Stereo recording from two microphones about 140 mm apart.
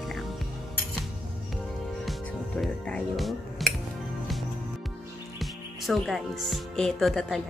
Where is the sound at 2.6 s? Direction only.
5° left (ahead or behind).